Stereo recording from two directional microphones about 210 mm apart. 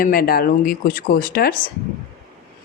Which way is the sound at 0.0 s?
45° left (ahead or behind).